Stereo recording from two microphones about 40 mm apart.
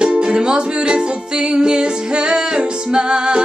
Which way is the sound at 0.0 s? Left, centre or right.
Right.